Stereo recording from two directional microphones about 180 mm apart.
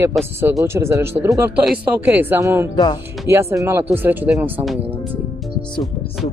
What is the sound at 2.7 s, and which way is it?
Speech, 25° left (ahead or behind).